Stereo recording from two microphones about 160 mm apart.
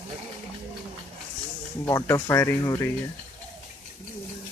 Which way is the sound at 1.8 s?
15° left (ahead or behind).